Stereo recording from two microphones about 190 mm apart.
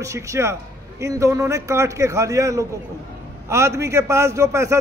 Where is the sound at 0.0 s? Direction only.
15° right (ahead or behind).